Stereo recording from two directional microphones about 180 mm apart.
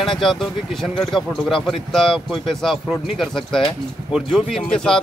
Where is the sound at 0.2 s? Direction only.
Centre (ahead or behind).